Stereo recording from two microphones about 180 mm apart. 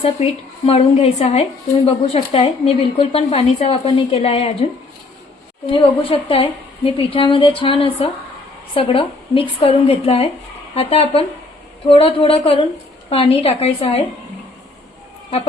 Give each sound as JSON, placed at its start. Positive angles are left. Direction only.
{"t": 0.0, "sound": "speech", "side_deg": 35}
{"t": 5.7, "sound": "a woman's voice", "side_deg": 30}